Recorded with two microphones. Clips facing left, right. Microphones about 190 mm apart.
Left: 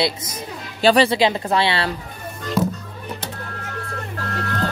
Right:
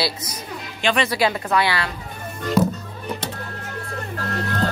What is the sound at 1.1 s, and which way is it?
Speech, 25° left (ahead or behind).